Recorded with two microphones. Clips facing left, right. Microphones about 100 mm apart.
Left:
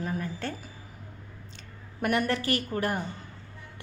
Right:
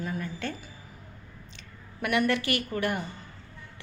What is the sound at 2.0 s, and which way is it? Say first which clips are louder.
A woman's voice: right 1 dB; 40° left (ahead or behind).